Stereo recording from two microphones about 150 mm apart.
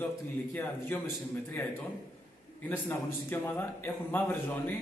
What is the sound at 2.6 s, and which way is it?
A man's voice, 15° left (ahead or behind).